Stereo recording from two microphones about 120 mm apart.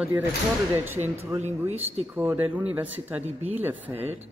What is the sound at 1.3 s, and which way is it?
Speech, 60° right (ahead or behind).